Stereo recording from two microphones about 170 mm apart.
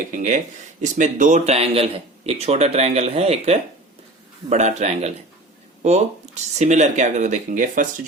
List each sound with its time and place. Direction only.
0.2 s speech: 45° right (ahead or behind)